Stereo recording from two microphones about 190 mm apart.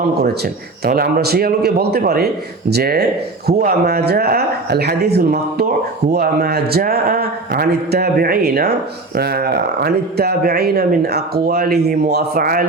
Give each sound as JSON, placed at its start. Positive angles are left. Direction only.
{"t": 0.1, "sound": "a man's voice", "side_deg": -55}